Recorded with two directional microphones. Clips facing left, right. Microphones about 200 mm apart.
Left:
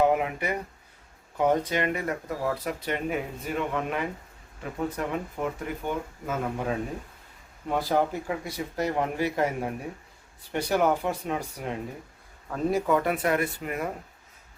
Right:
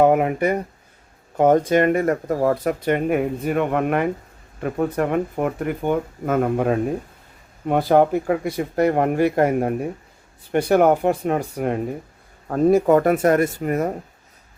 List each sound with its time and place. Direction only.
0.0 s speech: 55° right (ahead or behind)